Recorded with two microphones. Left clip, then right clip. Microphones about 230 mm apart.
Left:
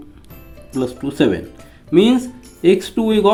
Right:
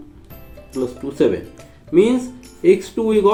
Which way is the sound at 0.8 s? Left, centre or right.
Left.